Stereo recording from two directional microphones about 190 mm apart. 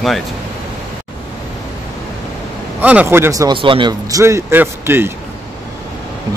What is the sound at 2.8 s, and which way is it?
A man's voice, 10° right (ahead or behind).